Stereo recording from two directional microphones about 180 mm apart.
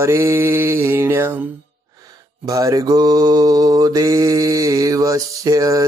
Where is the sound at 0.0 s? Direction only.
15° right (ahead or behind).